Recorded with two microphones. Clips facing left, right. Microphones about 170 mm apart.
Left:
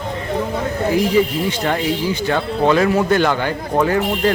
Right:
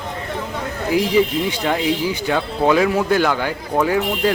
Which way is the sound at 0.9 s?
15° right (ahead or behind).